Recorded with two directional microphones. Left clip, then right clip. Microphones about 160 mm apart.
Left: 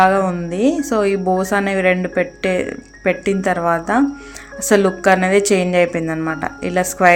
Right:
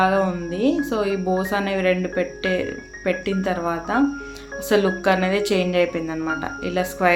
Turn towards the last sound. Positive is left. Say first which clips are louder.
# left 6 dB
turn(degrees=40)  # may be behind; listen again after turning